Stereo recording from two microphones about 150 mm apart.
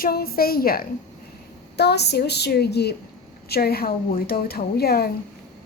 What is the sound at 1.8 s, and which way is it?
A child's voice, 90° left.